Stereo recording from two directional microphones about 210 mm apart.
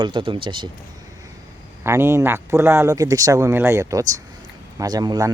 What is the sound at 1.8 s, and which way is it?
Speech, 10° right (ahead or behind).